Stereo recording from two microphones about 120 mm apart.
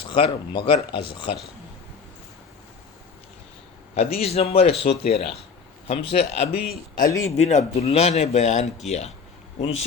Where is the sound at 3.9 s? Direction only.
60° left (ahead or behind).